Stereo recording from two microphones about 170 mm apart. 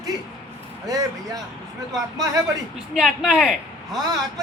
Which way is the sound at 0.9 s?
20° right (ahead or behind).